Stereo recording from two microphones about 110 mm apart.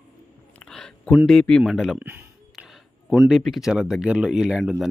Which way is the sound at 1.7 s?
5° right (ahead or behind).